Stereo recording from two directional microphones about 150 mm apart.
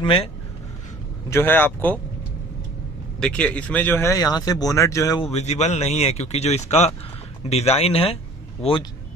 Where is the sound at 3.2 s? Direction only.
10° left (ahead or behind).